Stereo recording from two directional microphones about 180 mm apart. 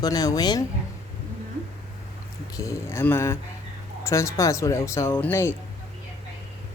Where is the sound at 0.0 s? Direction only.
20° left (ahead or behind).